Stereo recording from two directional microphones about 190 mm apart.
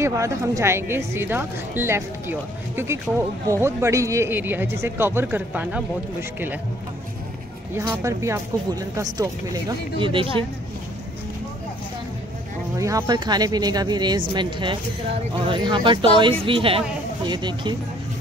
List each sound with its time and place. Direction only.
0.0 s speech: 15° right (ahead or behind)
7.7 s speech: 15° right (ahead or behind)
12.7 s speech: 15° right (ahead or behind)